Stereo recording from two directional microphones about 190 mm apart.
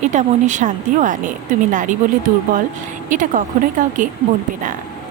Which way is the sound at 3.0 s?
45° right (ahead or behind).